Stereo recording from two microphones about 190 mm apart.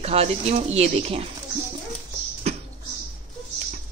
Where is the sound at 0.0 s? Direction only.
30° right (ahead or behind).